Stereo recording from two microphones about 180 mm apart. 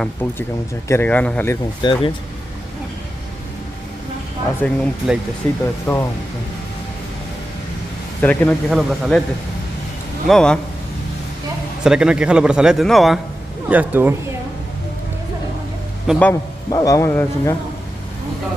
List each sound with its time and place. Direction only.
0.0 s speech: 10° left (ahead or behind)
1.8 s speech: 25° left (ahead or behind)
4.6 s speech: 10° left (ahead or behind)
5.9 s speech: 20° left (ahead or behind)
8.2 s a man's voice: 10° left (ahead or behind)
10.2 s a man's voice: 5° left (ahead or behind)
11.8 s a man's voice: 5° right (ahead or behind)
13.7 s speech: 10° right (ahead or behind)
16.1 s a man's voice: 5° right (ahead or behind)
16.7 s speech: 20° left (ahead or behind)